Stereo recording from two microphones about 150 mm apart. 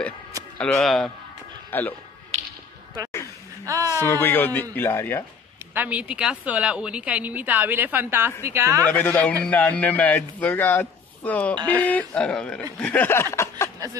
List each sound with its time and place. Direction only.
0.6 s speech: centre (ahead or behind)
3.6 s speech: 20° right (ahead or behind)
4.0 s a man's voice: 15° left (ahead or behind)
5.8 s a woman's voice: 10° right (ahead or behind)
8.8 s a man's voice: 10° left (ahead or behind)